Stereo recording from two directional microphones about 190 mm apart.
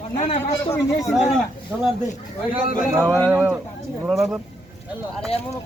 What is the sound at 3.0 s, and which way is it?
Speech, 5° left (ahead or behind).